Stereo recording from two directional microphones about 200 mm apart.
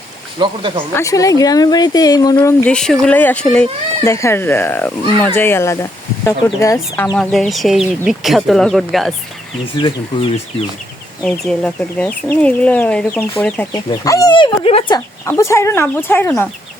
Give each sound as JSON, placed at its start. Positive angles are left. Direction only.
{"t": 0.4, "sound": "speech", "side_deg": -25}
{"t": 0.9, "sound": "speech", "side_deg": 15}
{"t": 7.2, "sound": "speech", "side_deg": 0}
{"t": 9.8, "sound": "speech", "side_deg": 25}
{"t": 11.2, "sound": "speech", "side_deg": 5}
{"t": 15.3, "sound": "speech", "side_deg": 15}